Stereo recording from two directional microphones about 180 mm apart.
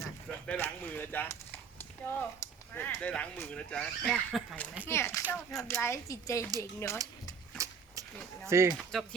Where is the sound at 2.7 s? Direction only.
10° left (ahead or behind).